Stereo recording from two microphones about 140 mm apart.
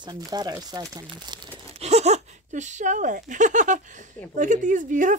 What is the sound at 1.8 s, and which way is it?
Speech, 50° right (ahead or behind).